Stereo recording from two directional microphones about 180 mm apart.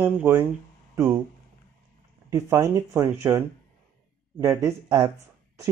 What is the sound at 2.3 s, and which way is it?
Speech, 15° right (ahead or behind).